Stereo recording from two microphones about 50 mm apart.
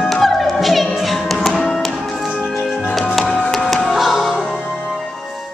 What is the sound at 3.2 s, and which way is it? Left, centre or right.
Music, left.